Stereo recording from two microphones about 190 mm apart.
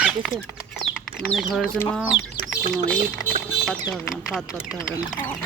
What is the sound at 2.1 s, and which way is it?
Chicken, 75° left (ahead or behind).